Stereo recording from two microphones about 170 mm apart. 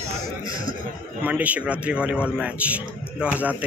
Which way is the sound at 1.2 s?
10° right (ahead or behind).